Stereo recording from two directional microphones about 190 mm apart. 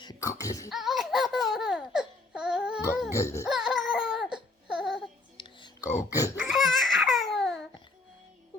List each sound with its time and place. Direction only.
0.0 s a sound: 20° left (ahead or behind)
0.7 s laughter: centre (ahead or behind)
3.1 s music: 15° left (ahead or behind)
3.4 s baby cry: 5° right (ahead or behind)
4.7 s babbling: 5° right (ahead or behind)
5.4 s whispering: 25° left (ahead or behind)
6.4 s babbling: centre (ahead or behind)